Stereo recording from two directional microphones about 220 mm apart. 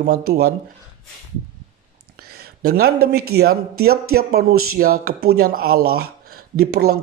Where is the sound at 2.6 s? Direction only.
45° right (ahead or behind).